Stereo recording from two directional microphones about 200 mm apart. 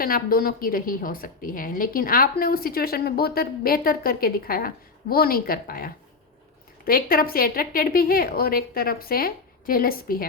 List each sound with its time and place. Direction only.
0.0 s a woman's voice: 45° left (ahead or behind)